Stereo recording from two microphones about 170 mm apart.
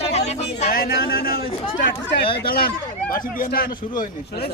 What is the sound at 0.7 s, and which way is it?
A man's voice, 60° left (ahead or behind).